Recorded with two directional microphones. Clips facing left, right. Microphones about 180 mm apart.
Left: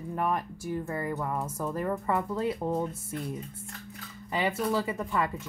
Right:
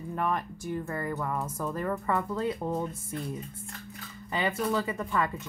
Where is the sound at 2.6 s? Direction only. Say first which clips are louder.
Left 2 dB; 20° left (ahead or behind).